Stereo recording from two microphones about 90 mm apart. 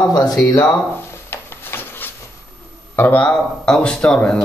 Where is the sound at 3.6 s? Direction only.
10° left (ahead or behind).